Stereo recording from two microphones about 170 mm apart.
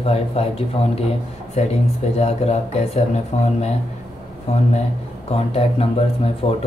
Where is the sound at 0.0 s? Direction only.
35° left (ahead or behind).